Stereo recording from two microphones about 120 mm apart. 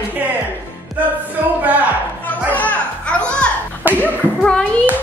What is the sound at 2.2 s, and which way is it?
Music, 15° left (ahead or behind).